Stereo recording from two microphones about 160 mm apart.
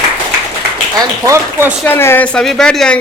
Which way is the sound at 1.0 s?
20° right (ahead or behind).